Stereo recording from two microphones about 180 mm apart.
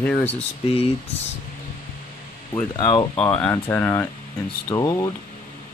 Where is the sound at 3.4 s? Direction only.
15° left (ahead or behind).